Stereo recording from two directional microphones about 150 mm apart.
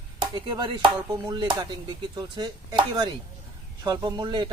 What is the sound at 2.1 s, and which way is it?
Speech, 25° right (ahead or behind).